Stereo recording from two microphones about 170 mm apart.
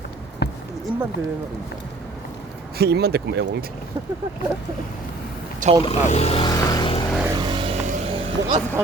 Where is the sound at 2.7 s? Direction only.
70° right (ahead or behind).